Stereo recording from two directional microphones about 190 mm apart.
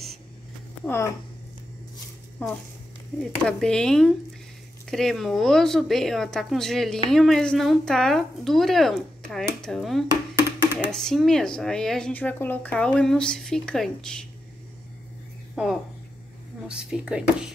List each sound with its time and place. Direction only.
0.8 s speech: 15° left (ahead or behind)
2.4 s speech: 10° left (ahead or behind)
15.5 s speech: 5° right (ahead or behind)